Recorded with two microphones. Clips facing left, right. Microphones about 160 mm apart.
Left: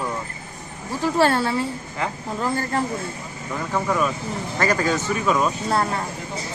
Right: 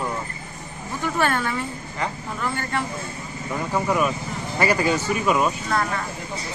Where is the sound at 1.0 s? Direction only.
35° left (ahead or behind).